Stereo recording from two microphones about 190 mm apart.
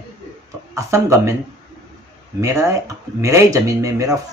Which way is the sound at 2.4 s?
15° right (ahead or behind).